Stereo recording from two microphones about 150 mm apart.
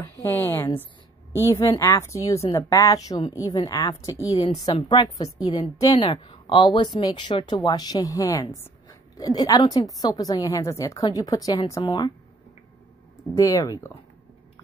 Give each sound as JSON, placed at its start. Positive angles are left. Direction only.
{"t": 0.0, "sound": "a woman's voice", "side_deg": 15}
{"t": 13.4, "sound": "a woman's voice", "side_deg": 20}